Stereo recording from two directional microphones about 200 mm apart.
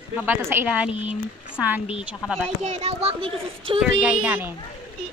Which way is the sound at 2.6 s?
30° right (ahead or behind).